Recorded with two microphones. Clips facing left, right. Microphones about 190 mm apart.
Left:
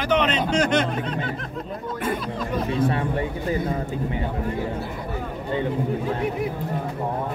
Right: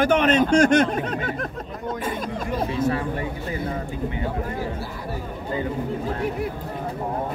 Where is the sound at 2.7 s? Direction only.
30° left (ahead or behind).